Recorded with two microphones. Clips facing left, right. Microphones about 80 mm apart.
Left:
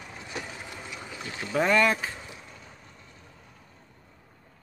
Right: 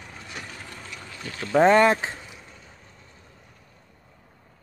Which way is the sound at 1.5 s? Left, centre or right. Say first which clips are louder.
Right 6 dB; right.